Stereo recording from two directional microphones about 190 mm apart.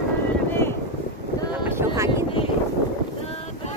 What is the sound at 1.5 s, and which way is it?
Wind noise, 15° right (ahead or behind).